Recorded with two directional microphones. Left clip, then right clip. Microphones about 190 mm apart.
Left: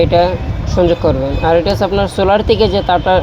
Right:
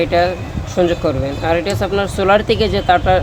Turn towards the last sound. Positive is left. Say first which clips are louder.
# left 1 dB
turn(degrees=5)  # may be behind; listen again after turning